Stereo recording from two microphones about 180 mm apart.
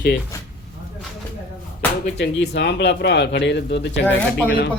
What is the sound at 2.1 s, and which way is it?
A man's voice, 70° left (ahead or behind).